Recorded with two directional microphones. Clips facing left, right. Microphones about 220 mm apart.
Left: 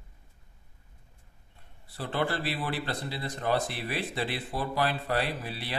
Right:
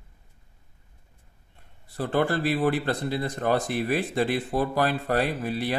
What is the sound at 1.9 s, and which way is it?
Speech, 45° right (ahead or behind).